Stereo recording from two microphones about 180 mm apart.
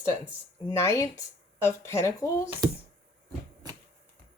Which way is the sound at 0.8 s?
15° left (ahead or behind).